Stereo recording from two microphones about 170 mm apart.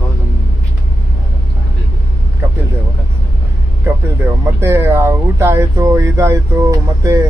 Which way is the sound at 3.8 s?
15° right (ahead or behind).